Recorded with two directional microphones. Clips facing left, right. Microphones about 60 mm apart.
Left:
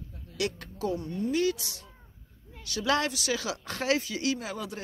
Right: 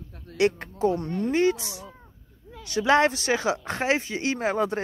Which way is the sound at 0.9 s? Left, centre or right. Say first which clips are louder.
Right 4 dB; right.